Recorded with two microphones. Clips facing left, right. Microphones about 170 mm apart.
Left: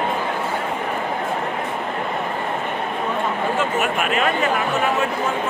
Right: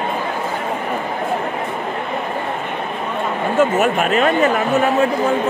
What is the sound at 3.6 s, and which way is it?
Speech, 40° right (ahead or behind).